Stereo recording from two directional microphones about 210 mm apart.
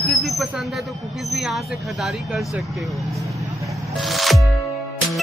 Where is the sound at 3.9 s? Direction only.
Centre (ahead or behind).